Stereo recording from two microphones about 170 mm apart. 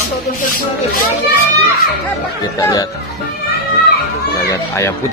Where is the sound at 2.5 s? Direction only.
20° left (ahead or behind).